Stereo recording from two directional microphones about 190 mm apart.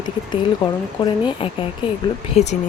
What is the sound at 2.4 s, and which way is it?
Speech, 35° left (ahead or behind).